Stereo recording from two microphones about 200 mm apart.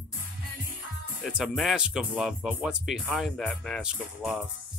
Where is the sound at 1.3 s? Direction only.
5° right (ahead or behind).